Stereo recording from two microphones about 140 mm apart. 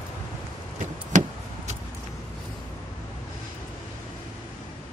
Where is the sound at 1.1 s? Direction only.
60° right (ahead or behind).